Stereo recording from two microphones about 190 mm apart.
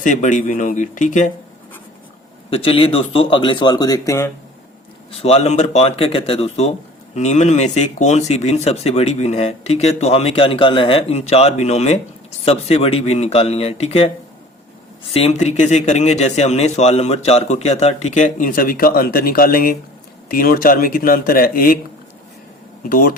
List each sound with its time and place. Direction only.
0.0 s speech: 40° left (ahead or behind)
2.5 s speech: 30° left (ahead or behind)
5.2 s speech: 35° left (ahead or behind)
15.1 s speech: 35° left (ahead or behind)
22.9 s speech: 45° left (ahead or behind)